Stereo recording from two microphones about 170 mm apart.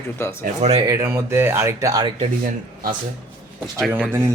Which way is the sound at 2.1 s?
35° right (ahead or behind).